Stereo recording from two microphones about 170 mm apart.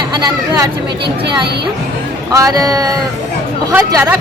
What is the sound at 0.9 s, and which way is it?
Speech, 80° right.